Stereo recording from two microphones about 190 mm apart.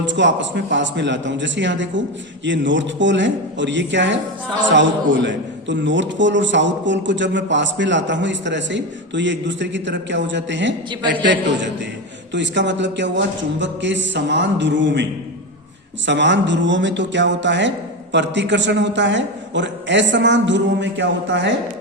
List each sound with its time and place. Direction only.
0.0 s a man's voice: 70° right (ahead or behind)
16.0 s a man's voice: 70° right (ahead or behind)